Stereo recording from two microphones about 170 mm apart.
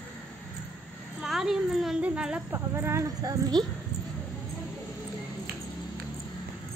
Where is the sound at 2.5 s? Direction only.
15° right (ahead or behind).